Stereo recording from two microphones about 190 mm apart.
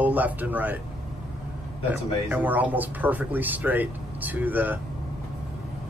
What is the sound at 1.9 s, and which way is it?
A man's voice, 10° right (ahead or behind).